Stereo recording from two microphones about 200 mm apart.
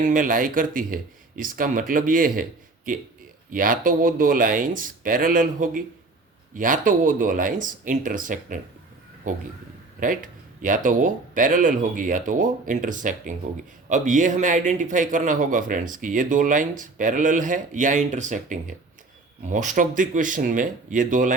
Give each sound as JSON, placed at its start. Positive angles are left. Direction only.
{"t": 0.0, "sound": "a man's voice", "side_deg": -40}
{"t": 10.6, "sound": "a man's voice", "side_deg": -40}